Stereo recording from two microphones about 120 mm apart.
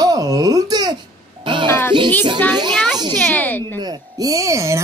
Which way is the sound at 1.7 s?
20° left (ahead or behind).